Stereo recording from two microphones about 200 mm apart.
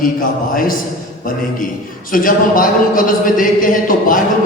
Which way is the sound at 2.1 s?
45° left (ahead or behind).